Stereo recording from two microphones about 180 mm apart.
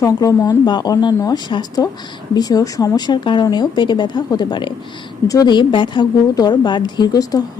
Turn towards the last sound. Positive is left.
turn(degrees=20)  # may be behind; listen again after turning